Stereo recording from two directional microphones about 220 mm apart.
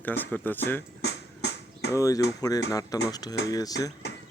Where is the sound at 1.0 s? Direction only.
50° left (ahead or behind).